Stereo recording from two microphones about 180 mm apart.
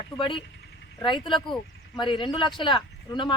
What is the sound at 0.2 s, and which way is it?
Speech, 25° left (ahead or behind).